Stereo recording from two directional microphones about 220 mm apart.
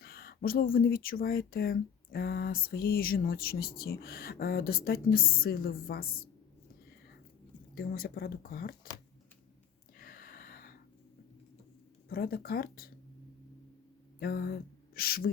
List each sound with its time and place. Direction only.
0.0 s speech: 45° left (ahead or behind)
7.8 s speech: 45° left (ahead or behind)
10.0 s a sound: 40° left (ahead or behind)
12.0 s speech: 45° left (ahead or behind)
14.2 s speech: 45° left (ahead or behind)